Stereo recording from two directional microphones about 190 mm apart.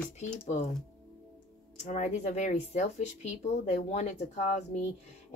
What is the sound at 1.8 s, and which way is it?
Speech, 35° left (ahead or behind).